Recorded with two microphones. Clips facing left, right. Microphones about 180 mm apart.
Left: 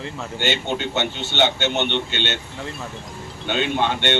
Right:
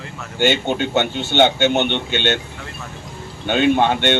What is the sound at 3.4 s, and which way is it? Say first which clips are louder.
Speech: right 6 dB; 50° right (ahead or behind).